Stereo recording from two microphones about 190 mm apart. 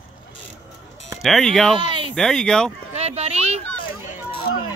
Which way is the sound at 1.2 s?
Centre (ahead or behind).